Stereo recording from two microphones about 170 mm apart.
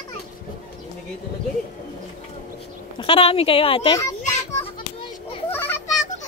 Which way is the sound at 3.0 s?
35° left (ahead or behind).